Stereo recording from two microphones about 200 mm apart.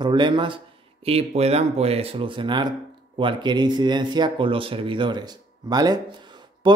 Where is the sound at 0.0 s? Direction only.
20° right (ahead or behind).